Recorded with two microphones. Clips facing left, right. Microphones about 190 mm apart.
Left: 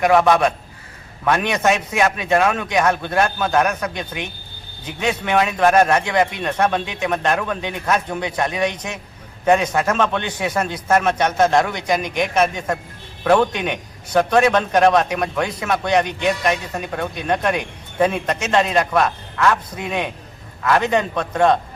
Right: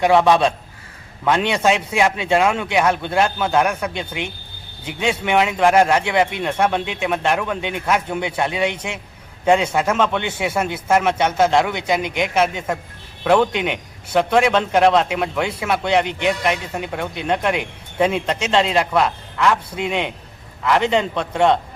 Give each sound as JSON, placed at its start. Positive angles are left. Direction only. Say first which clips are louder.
{"t": 0.0, "sound": "a man's voice", "louder": "even", "side_deg": -15}
{"t": 12.0, "sound": "a man's voice", "louder": "even", "side_deg": -20}